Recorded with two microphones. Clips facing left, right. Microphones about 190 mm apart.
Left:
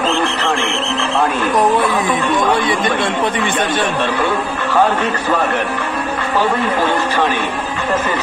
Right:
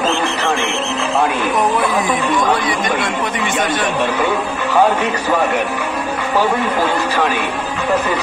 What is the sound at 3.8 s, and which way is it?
Speech, 15° right (ahead or behind).